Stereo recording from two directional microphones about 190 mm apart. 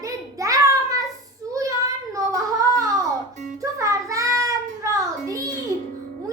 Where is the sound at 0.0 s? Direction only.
15° right (ahead or behind).